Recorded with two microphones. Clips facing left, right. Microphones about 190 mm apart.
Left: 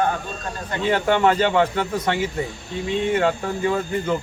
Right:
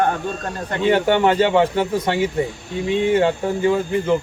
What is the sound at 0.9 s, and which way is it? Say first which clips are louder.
A man's voice: right 2 dB; 25° right (ahead or behind).